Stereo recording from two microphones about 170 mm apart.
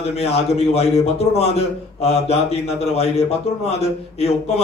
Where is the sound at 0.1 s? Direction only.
40° left (ahead or behind).